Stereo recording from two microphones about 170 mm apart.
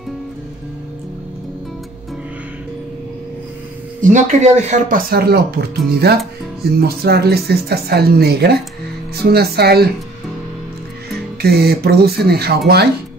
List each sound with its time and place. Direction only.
4.0 s speech: 45° right (ahead or behind); by 9.8 s 70° right (ahead or behind)
11.4 s speech: 70° right (ahead or behind)